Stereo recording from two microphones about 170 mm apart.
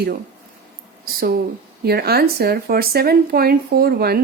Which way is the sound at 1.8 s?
65° right (ahead or behind).